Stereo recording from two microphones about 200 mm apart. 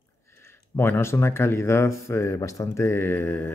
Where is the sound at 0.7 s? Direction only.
10° left (ahead or behind).